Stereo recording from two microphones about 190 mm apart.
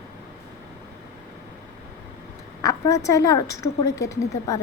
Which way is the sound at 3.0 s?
15° left (ahead or behind).